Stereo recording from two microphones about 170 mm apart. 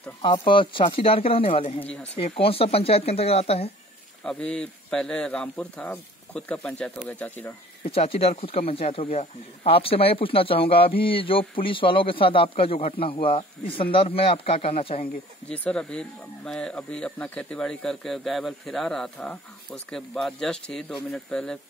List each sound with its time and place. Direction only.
0.2 s speech: 30° left (ahead or behind)
4.2 s speech: 5° left (ahead or behind)
7.8 s speech: 35° left (ahead or behind)
15.4 s speech: 5° left (ahead or behind)